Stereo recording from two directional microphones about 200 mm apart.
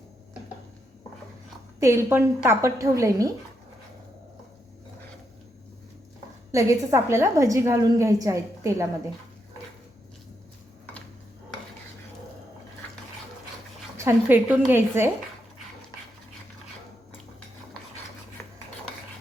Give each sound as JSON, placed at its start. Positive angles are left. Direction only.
{"t": 1.8, "sound": "a woman's voice", "side_deg": -15}
{"t": 6.5, "sound": "a woman's voice", "side_deg": -15}
{"t": 13.9, "sound": "a woman's voice", "side_deg": -10}